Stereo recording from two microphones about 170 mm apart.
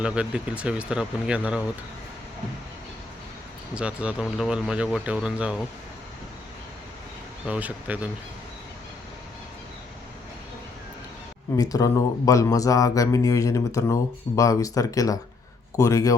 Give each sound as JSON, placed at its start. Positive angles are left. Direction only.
{"t": 0.0, "sound": "speech", "side_deg": -5}
{"t": 3.8, "sound": "speech", "side_deg": -5}
{"t": 7.4, "sound": "speech", "side_deg": -10}
{"t": 11.5, "sound": "speech", "side_deg": 20}